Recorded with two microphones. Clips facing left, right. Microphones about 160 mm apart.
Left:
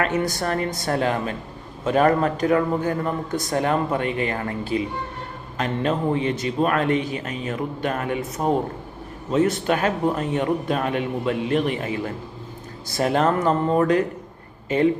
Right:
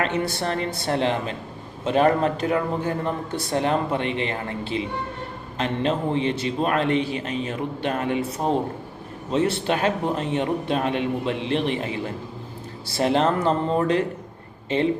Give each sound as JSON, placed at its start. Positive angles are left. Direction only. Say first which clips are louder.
{"t": 0.0, "sound": "a man's voice", "louder": "left 1 dB", "side_deg": -30}
{"t": 9.3, "sound": "speech", "louder": "left 2 dB", "side_deg": -30}